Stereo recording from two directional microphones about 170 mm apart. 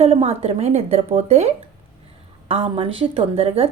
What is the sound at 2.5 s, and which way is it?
Speech, 35° right (ahead or behind).